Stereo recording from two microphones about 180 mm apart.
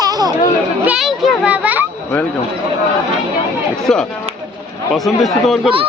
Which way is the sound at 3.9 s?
5° left (ahead or behind).